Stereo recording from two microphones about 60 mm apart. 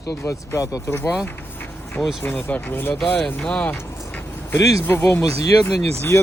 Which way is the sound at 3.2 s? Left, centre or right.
Centre.